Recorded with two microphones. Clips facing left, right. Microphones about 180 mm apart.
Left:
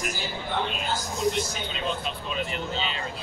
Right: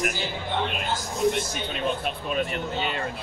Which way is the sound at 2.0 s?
55° right (ahead or behind).